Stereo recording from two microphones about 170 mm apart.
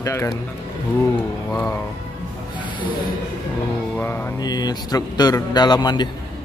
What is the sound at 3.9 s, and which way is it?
Music, 10° left (ahead or behind).